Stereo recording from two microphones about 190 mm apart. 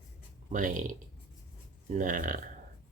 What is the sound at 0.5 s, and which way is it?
Speech, 45° right (ahead or behind).